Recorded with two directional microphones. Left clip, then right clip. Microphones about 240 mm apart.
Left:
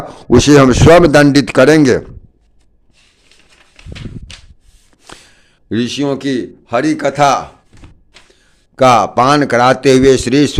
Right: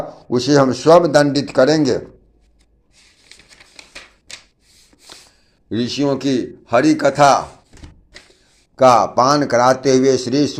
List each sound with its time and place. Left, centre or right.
0.3 s a man's voice: left
5.6 s a man's voice: left
8.7 s a man's voice: left
9.7 s a man's voice: left